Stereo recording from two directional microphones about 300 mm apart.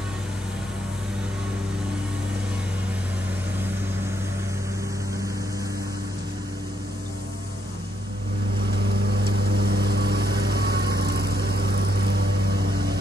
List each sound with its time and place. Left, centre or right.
8.6 s vehicle: right